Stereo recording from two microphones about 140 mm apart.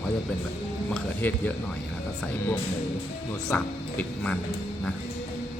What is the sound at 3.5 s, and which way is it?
Speech, 10° left (ahead or behind).